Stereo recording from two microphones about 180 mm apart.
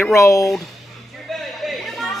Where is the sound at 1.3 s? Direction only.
Centre (ahead or behind).